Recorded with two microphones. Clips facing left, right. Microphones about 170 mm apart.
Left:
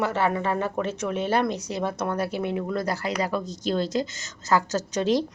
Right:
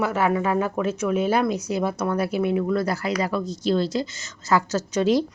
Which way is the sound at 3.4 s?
40° left (ahead or behind).